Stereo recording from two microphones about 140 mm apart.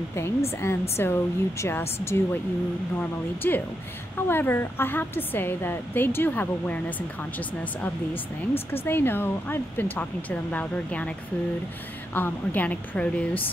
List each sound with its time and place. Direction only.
0.1 s a woman's voice: 20° left (ahead or behind)
3.0 s a woman's voice: 15° left (ahead or behind)
8.1 s speech: 45° left (ahead or behind)
8.8 s a woman's voice: 15° left (ahead or behind)
12.1 s a woman's voice: 15° left (ahead or behind)